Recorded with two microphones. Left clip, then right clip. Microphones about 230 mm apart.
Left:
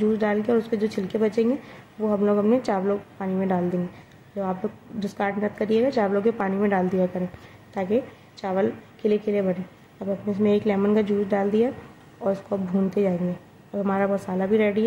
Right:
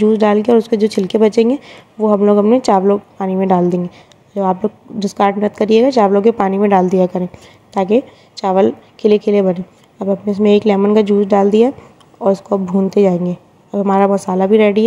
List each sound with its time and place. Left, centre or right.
0.0 s a woman's voice: right